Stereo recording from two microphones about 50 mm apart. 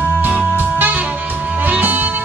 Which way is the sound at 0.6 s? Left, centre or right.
Right.